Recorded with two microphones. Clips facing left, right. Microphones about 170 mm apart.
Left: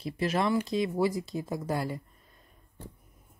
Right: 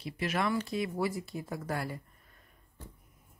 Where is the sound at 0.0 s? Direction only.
30° left (ahead or behind).